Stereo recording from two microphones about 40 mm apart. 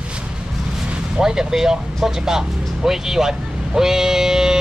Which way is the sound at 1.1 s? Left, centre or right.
Centre.